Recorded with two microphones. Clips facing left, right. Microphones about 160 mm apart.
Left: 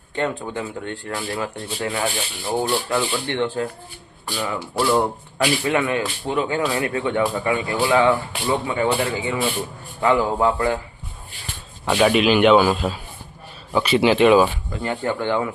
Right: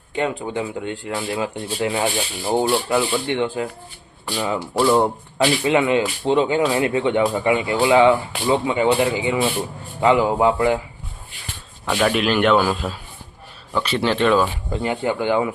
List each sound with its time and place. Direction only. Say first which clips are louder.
0.2 s speech: right 2 dB; 10° right (ahead or behind)
2.9 s speech: right 3 dB; 10° right (ahead or behind)
11.9 s a man's voice: left 3 dB; 5° left (ahead or behind)
14.8 s speech: right 2 dB; 15° right (ahead or behind)